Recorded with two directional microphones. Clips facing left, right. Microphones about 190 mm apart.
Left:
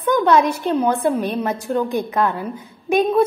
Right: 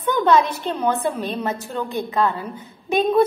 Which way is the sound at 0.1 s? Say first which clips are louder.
Left 2 dB; 10° left (ahead or behind).